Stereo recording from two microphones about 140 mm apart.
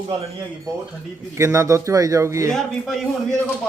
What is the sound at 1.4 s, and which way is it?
A man's voice, 20° right (ahead or behind).